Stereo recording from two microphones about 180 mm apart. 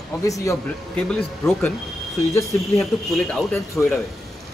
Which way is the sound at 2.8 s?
5° left (ahead or behind).